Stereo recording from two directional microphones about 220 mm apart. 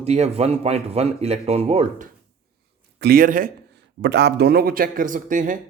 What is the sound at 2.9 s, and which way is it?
Speech, 45° right (ahead or behind).